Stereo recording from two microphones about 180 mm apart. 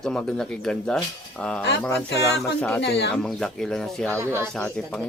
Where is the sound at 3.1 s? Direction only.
5° left (ahead or behind).